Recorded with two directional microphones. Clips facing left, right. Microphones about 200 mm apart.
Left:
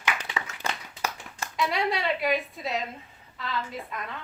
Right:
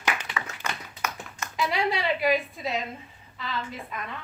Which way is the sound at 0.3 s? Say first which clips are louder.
Left 1 dB; 30° left (ahead or behind).